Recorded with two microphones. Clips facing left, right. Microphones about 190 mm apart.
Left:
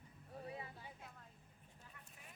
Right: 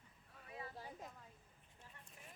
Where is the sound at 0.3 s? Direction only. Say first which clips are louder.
Left 7 dB; 30° left (ahead or behind).